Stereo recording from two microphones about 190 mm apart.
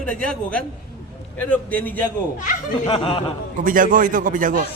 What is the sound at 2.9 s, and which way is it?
Speech, 30° left (ahead or behind).